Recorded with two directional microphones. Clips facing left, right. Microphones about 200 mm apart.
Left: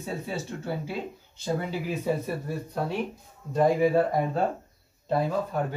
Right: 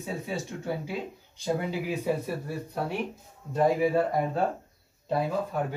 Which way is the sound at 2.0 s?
10° right (ahead or behind).